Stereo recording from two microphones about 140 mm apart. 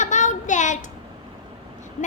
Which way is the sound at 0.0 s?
65° left (ahead or behind).